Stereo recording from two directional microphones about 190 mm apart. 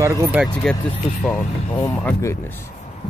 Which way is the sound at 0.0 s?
15° right (ahead or behind).